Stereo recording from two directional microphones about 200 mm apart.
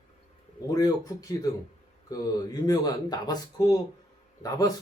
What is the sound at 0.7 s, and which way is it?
A man's voice, 20° left (ahead or behind).